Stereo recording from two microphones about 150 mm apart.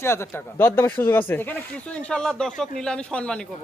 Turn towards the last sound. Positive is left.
turn(degrees=5)  # may be behind; listen again after turning